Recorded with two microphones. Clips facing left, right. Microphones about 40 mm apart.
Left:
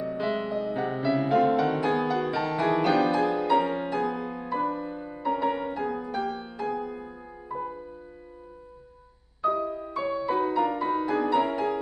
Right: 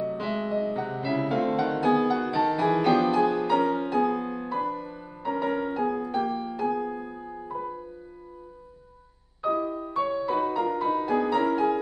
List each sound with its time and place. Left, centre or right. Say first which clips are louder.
0.0 s music: even; centre
0.7 s music: left 1 dB; left
1.3 s music: left 5 dB; centre
4.6 s music: left 2 dB; centre
6.5 s music: right 3 dB; centre
9.4 s music: even; centre
9.9 s music: right 1 dB; centre